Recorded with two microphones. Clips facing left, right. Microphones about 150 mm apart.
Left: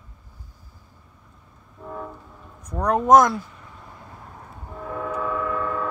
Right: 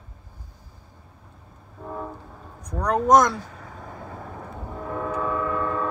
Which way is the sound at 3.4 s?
90° right.